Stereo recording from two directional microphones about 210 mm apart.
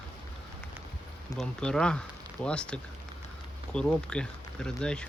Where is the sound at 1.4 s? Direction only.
5° left (ahead or behind).